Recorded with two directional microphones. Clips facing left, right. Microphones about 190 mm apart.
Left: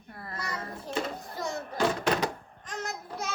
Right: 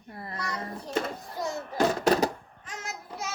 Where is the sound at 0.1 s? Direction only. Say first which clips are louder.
Right 3 dB; 20° right (ahead or behind).